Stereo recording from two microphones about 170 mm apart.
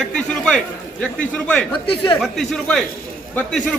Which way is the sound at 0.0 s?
5° left (ahead or behind).